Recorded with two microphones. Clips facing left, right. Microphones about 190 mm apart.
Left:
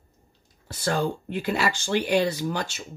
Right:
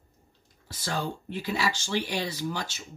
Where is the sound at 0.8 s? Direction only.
55° left (ahead or behind).